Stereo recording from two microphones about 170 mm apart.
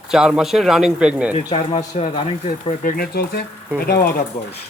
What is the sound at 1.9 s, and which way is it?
Speech, 45° left (ahead or behind).